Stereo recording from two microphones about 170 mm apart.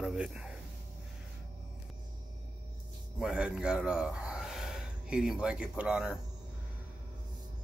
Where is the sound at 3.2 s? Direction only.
5° right (ahead or behind).